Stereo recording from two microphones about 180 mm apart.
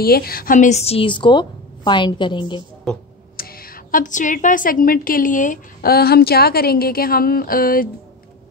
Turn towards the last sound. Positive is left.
turn(degrees=55)  # may be behind; listen again after turning